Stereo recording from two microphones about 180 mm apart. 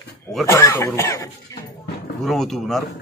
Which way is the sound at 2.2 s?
Centre (ahead or behind).